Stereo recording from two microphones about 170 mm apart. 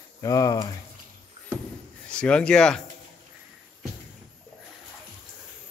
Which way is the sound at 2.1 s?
5° left (ahead or behind).